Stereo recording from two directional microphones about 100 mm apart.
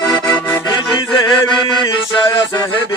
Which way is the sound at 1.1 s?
55° left (ahead or behind).